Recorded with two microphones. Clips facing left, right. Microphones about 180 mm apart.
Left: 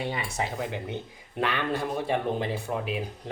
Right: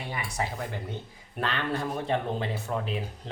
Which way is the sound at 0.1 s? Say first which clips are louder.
Left 2 dB; 25° left (ahead or behind).